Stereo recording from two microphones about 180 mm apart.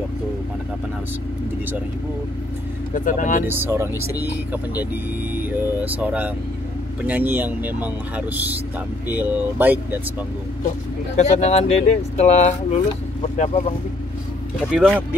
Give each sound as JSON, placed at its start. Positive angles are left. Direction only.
{"t": 2.9, "sound": "speech", "side_deg": 45}
{"t": 3.4, "sound": "speech", "side_deg": -10}
{"t": 9.1, "sound": "speech", "side_deg": -10}
{"t": 11.1, "sound": "speech", "side_deg": 40}
{"t": 14.7, "sound": "speech", "side_deg": 5}